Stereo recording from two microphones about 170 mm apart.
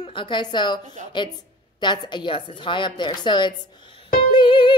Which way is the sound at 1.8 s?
25° left (ahead or behind).